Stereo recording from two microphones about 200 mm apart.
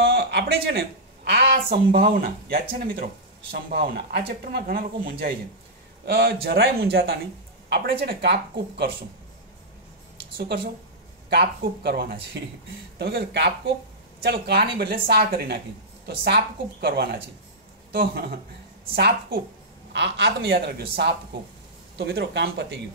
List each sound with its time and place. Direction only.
0.0 s speech: 55° right (ahead or behind)
10.3 s speech: 50° right (ahead or behind)